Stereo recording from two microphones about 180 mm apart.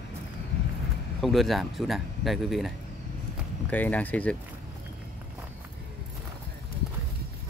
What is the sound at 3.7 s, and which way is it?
Speech, 10° left (ahead or behind).